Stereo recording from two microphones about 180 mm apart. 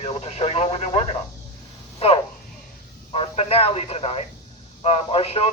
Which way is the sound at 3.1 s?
35° left (ahead or behind).